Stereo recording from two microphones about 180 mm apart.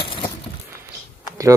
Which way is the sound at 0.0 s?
30° left (ahead or behind).